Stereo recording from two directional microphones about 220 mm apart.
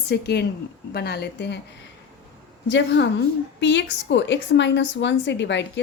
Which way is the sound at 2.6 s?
55° left (ahead or behind).